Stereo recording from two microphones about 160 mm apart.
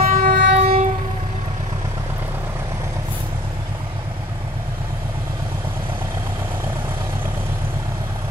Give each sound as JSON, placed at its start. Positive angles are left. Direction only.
{"t": 0.0, "sound": "train", "side_deg": -55}
{"t": 0.6, "sound": "train", "side_deg": -40}